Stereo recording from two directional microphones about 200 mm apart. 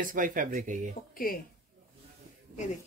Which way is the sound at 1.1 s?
45° left (ahead or behind).